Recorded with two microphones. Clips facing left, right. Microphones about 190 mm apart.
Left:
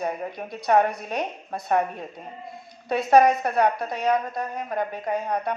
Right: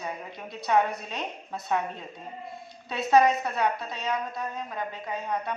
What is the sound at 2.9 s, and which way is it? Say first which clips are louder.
A woman's voice: left 4 dB; 50° left (ahead or behind).